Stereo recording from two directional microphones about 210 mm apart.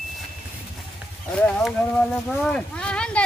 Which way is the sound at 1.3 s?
5° left (ahead or behind).